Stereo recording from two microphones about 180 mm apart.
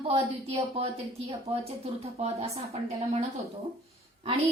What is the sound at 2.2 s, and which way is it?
A woman's voice, 35° right (ahead or behind).